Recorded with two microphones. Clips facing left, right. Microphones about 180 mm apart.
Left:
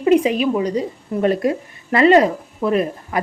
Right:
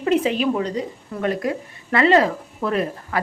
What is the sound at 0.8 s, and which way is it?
A woman's voice, 25° left (ahead or behind).